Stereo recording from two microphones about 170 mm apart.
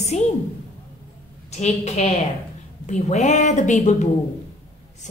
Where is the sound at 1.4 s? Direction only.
40° left (ahead or behind).